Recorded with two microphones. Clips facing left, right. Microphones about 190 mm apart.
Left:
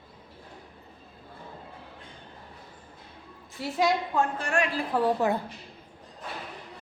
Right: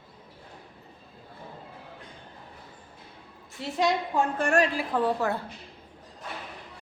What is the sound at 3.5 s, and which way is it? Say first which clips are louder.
Speech: even; centre (ahead or behind).